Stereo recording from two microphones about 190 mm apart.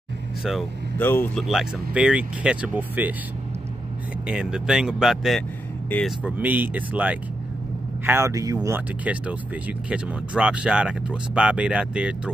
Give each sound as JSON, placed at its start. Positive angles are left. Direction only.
{"t": 0.4, "sound": "speech", "side_deg": 0}
{"t": 0.9, "sound": "speech", "side_deg": 10}
{"t": 1.5, "sound": "speech", "side_deg": -5}
{"t": 4.3, "sound": "speech", "side_deg": -5}
{"t": 6.2, "sound": "speech", "side_deg": -10}